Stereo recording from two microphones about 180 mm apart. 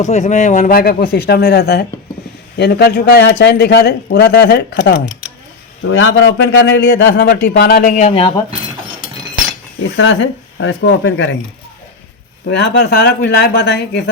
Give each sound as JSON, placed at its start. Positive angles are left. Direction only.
{"t": 0.0, "sound": "speech", "side_deg": 40}
{"t": 5.9, "sound": "a man's voice", "side_deg": 90}
{"t": 9.8, "sound": "speech", "side_deg": 90}
{"t": 12.5, "sound": "speech", "side_deg": 70}